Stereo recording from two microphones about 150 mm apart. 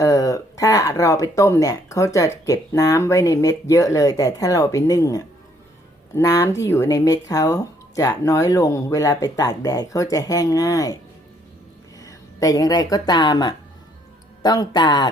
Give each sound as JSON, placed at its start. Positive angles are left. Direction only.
{"t": 0.0, "sound": "speech", "side_deg": 25}
{"t": 11.9, "sound": "speech", "side_deg": 25}